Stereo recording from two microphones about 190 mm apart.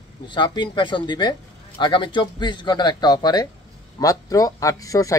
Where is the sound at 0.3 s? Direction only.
25° left (ahead or behind).